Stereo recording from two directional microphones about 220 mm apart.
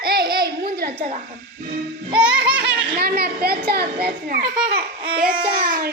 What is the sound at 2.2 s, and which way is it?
Music, 5° right (ahead or behind).